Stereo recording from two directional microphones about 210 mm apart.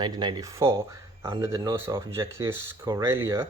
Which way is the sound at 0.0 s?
20° right (ahead or behind).